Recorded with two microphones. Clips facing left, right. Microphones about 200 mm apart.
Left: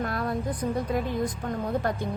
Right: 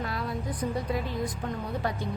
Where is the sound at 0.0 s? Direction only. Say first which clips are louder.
Left 4 dB; 50° left (ahead or behind).